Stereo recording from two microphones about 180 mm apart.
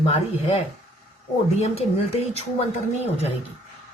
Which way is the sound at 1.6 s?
35° left (ahead or behind).